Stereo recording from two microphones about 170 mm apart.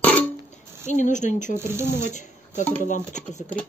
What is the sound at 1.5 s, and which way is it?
Speech, 15° right (ahead or behind).